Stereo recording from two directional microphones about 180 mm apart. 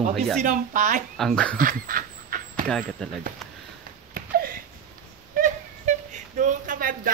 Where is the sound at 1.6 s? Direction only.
50° right (ahead or behind).